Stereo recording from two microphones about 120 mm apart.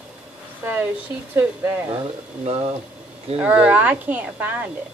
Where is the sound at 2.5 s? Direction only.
45° right (ahead or behind).